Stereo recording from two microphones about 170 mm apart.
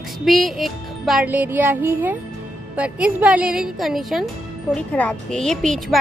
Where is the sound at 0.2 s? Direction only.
Centre (ahead or behind).